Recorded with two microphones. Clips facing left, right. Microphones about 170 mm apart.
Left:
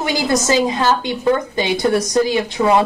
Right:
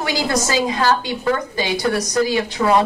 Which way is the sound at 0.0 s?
20° left (ahead or behind).